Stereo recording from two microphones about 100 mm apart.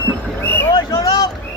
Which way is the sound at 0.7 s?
40° left (ahead or behind).